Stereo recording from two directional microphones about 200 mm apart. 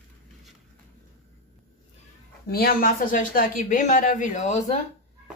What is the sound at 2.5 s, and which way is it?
Speech, 50° left (ahead or behind).